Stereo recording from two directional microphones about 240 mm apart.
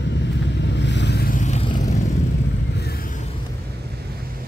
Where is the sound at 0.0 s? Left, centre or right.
Left.